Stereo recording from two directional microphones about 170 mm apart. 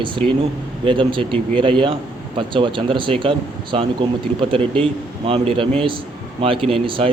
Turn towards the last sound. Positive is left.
turn(degrees=-30)  # may be behind; listen again after turning